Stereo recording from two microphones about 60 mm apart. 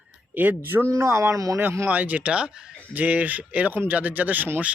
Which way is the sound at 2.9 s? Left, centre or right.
Right.